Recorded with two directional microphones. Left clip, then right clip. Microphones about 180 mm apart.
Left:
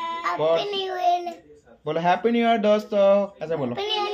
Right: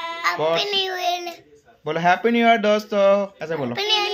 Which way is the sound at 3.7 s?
15° left (ahead or behind).